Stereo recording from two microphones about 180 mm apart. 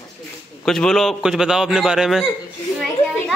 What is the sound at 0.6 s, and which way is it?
A man's voice, 5° left (ahead or behind).